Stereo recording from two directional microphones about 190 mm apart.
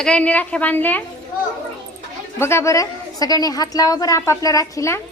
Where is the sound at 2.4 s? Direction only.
15° left (ahead or behind).